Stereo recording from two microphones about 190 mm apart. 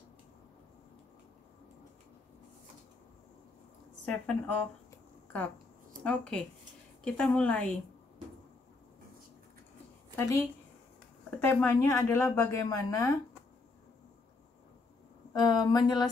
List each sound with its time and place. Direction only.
4.0 s a woman's voice: 5° left (ahead or behind)
6.0 s a woman's voice: 5° left (ahead or behind)
10.1 s a woman's voice: 15° left (ahead or behind)
15.3 s speech: 20° left (ahead or behind)